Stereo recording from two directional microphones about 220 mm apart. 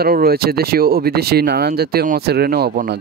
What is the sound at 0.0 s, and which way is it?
Speech, 45° right (ahead or behind).